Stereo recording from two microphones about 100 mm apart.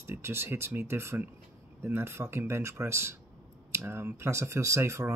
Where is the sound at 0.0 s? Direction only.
25° right (ahead or behind).